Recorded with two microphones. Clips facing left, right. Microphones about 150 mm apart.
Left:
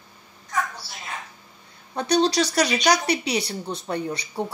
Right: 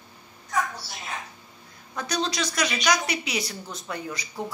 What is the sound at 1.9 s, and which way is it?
A woman's voice, 30° left (ahead or behind).